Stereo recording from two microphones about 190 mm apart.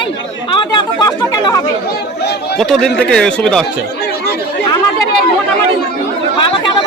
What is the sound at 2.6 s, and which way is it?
Speech, 5° left (ahead or behind).